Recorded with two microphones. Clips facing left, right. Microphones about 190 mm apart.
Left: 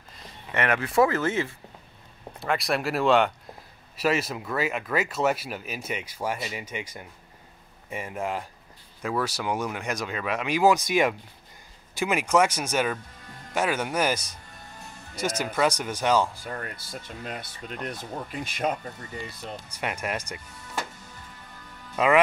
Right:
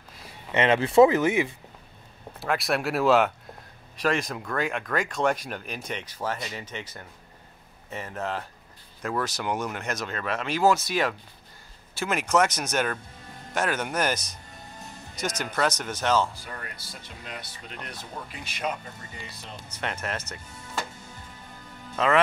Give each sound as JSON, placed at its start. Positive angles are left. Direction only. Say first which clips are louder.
{"t": 0.5, "sound": "speech", "louder": "right 4 dB", "side_deg": -20}
{"t": 2.4, "sound": "speech", "louder": "even", "side_deg": 0}
{"t": 16.4, "sound": "speech", "louder": "left 5 dB", "side_deg": 45}
{"t": 19.7, "sound": "speech", "louder": "left 1 dB", "side_deg": 10}
{"t": 21.9, "sound": "speech", "louder": "left 2 dB", "side_deg": 10}